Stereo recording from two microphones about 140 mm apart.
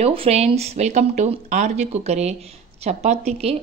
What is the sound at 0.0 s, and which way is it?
Speech, 45° right (ahead or behind).